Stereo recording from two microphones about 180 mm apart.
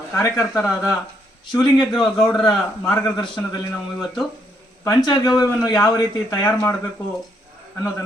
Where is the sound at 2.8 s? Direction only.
20° left (ahead or behind).